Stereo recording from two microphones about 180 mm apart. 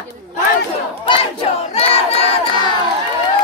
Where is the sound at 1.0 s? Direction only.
30° left (ahead or behind).